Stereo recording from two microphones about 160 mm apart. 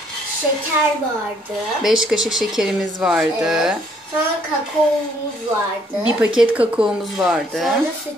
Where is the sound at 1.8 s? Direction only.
5° right (ahead or behind).